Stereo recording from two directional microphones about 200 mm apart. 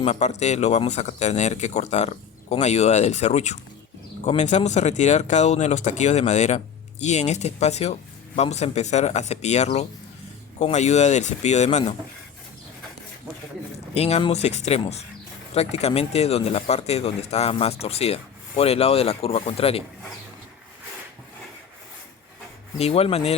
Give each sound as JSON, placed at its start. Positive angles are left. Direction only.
{"t": 0.0, "sound": "speech", "side_deg": 35}
{"t": 13.9, "sound": "speech", "side_deg": 30}
{"t": 22.8, "sound": "speech", "side_deg": 30}